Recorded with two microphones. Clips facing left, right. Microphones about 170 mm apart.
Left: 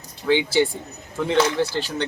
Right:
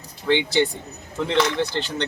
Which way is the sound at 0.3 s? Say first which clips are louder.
Left 1 dB; 5° left (ahead or behind).